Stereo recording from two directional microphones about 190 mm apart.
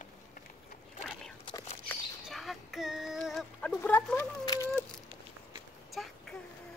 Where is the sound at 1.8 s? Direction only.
Centre (ahead or behind).